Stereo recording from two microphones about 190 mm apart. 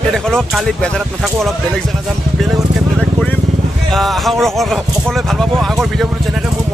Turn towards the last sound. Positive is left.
turn(degrees=0)  # may be behind; listen again after turning